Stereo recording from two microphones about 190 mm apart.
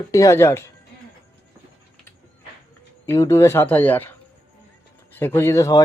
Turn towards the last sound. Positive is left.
turn(degrees=15)  # may be behind; listen again after turning